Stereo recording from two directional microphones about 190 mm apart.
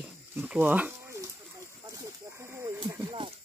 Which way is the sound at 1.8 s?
15° right (ahead or behind).